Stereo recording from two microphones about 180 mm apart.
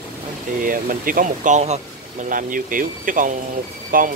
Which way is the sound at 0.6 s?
50° right (ahead or behind).